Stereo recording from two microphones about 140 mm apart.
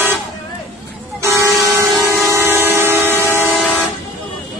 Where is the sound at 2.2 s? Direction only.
20° right (ahead or behind).